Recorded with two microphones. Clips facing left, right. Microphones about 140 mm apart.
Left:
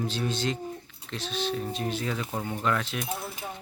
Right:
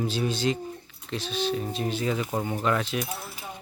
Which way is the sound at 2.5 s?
5° right (ahead or behind).